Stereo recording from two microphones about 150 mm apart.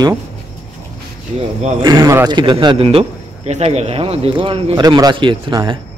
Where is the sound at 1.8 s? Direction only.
25° right (ahead or behind).